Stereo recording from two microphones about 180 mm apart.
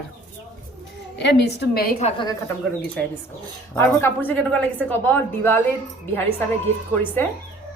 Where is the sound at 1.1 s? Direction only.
75° left (ahead or behind).